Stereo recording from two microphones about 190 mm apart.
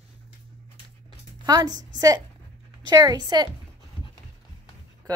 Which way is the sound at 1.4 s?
20° right (ahead or behind).